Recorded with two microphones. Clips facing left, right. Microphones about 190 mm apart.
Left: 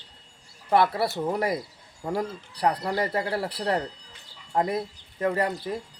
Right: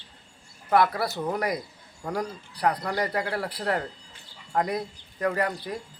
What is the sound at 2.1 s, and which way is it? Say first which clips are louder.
Speech: left 2 dB; 25° left (ahead or behind).